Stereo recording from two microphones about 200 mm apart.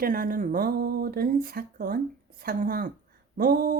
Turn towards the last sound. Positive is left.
turn(degrees=-45)  # may be behind; listen again after turning